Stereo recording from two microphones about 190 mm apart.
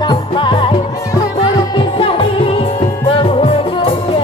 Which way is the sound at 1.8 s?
30° left (ahead or behind).